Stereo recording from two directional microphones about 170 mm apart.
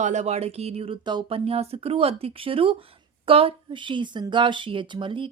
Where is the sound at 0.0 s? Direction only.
45° right (ahead or behind).